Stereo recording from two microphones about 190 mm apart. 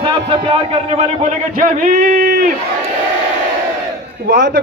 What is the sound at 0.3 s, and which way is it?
Speech, 30° right (ahead or behind).